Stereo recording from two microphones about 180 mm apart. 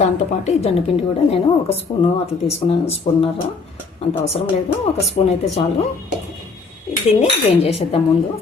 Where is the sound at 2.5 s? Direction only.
35° left (ahead or behind).